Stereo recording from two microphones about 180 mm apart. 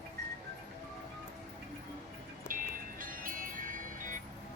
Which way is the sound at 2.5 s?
50° right (ahead or behind).